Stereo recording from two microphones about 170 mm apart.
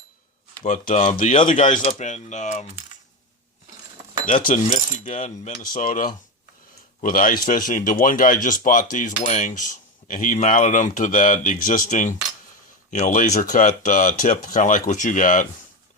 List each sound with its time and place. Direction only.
0.6 s speech: 45° left (ahead or behind)
4.3 s speech: 50° left (ahead or behind)